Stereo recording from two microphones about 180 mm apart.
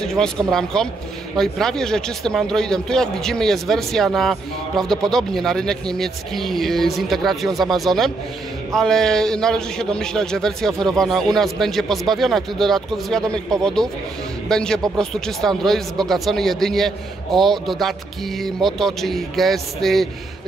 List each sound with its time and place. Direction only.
0.0 s a man's voice: 5° left (ahead or behind)